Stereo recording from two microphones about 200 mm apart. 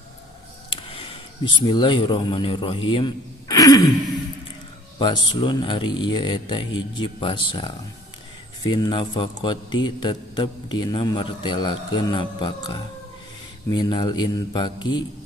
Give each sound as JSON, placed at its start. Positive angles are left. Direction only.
{"t": 0.7, "sound": "a sound", "side_deg": 25}
{"t": 1.7, "sound": "a man's voice", "side_deg": 20}
{"t": 4.9, "sound": "a man's voice", "side_deg": 20}